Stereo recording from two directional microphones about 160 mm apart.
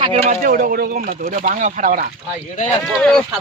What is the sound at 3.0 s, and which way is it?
Speech, 5° left (ahead or behind).